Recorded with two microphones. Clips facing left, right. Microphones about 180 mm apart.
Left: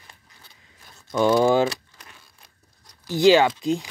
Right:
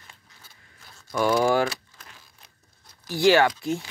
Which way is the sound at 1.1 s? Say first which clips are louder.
Left 3 dB; 20° left (ahead or behind).